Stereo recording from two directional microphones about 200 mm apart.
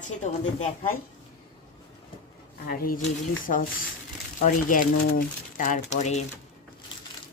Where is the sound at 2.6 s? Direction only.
45° left (ahead or behind).